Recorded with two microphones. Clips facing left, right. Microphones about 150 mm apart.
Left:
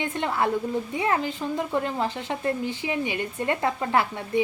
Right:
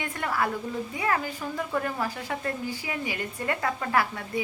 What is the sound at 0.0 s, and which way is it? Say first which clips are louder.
A woman's voice: left 3 dB; 25° left (ahead or behind).